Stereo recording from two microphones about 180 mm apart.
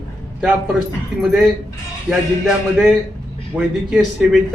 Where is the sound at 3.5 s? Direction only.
Centre (ahead or behind).